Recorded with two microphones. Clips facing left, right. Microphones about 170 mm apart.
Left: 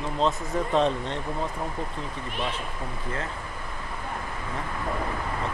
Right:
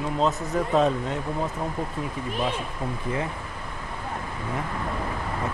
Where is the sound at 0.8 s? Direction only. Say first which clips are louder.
Right 2 dB; 5° right (ahead or behind).